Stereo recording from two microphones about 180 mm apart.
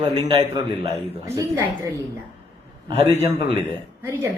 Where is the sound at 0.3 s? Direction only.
25° right (ahead or behind).